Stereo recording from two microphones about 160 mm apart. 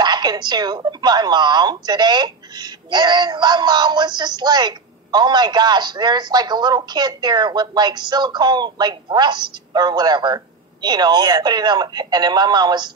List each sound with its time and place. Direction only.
0.0 s a woman's voice: 25° right (ahead or behind)